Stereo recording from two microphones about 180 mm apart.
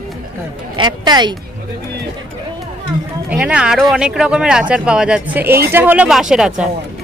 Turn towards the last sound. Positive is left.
turn(degrees=-5)  # may be behind; listen again after turning